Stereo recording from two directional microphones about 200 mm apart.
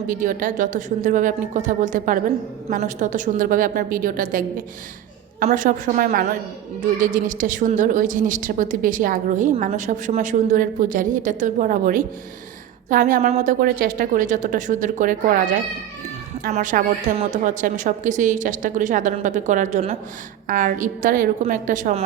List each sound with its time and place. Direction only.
0.1 s a woman's voice: 40° right (ahead or behind)